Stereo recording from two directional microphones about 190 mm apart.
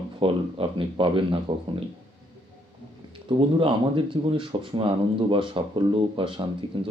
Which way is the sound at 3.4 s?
25° right (ahead or behind).